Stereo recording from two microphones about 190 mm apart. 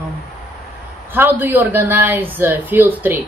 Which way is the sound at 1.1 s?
10° right (ahead or behind).